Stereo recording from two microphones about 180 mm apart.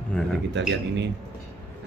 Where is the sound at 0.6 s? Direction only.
80° right.